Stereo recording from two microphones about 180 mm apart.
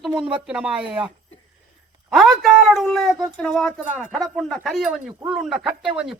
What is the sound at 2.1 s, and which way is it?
Speech, centre (ahead or behind).